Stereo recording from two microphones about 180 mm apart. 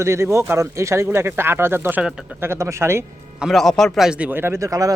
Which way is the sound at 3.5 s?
Centre (ahead or behind).